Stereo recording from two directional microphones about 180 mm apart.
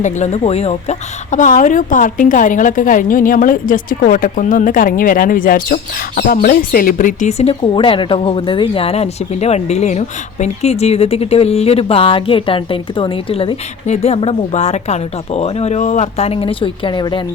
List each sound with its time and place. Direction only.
0.0 s a woman's voice: 40° left (ahead or behind)